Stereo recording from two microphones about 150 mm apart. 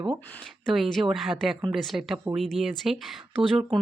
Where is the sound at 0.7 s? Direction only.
Centre (ahead or behind).